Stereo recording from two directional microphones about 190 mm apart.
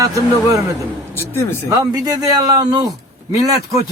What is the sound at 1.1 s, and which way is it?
Speech, 10° left (ahead or behind).